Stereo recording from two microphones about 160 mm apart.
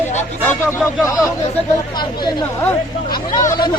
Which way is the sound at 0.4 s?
15° left (ahead or behind).